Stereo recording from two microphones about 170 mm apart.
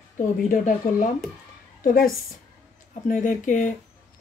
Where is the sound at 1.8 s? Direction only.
55° left (ahead or behind).